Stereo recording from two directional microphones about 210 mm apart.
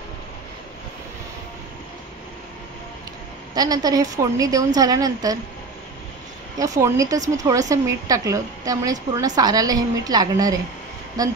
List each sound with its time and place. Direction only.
3.5 s a woman's voice: 15° right (ahead or behind)
6.6 s a woman's voice: 15° right (ahead or behind)